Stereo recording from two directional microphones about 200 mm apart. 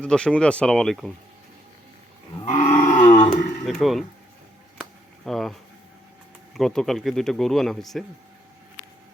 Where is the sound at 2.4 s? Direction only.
35° left (ahead or behind).